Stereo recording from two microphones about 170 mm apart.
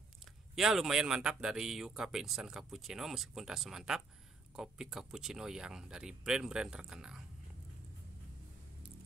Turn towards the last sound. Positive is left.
turn(degrees=-5)  # may be behind; listen again after turning